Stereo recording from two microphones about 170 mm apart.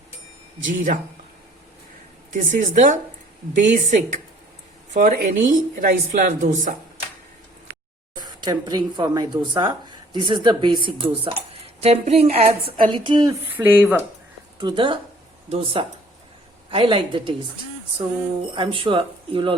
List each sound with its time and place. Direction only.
0.7 s a woman's voice: 50° right (ahead or behind)
2.3 s a woman's voice: 50° right (ahead or behind)
8.2 s a woman's voice: 25° right (ahead or behind)
13.6 s speech: 10° right (ahead or behind)
14.6 s a woman's voice: 30° right (ahead or behind)
18.5 s a woman's voice: 30° right (ahead or behind)